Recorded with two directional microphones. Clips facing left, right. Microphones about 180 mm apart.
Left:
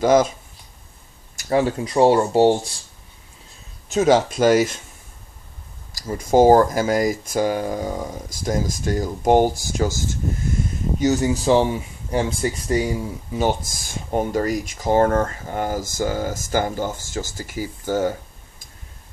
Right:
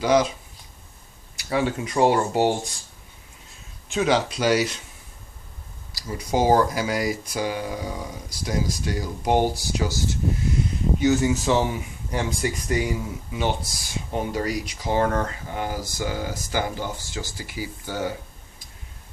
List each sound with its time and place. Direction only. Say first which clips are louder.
0.0 s speech: left 4 dB; 45° left (ahead or behind)
1.3 s speech: left 4 dB; 45° left (ahead or behind); by 2.7 s 30° left (ahead or behind)
3.9 s speech: left 5 dB; 45° left (ahead or behind)
5.9 s speech: left 8 dB; 45° left (ahead or behind)